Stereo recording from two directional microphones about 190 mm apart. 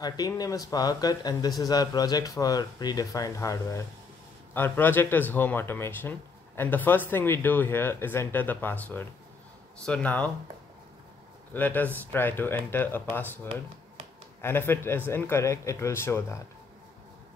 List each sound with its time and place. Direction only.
0.0 s speech: 20° left (ahead or behind)
11.5 s speech: 10° left (ahead or behind)